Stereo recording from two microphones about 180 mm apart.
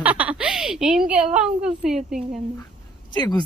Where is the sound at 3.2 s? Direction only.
20° left (ahead or behind).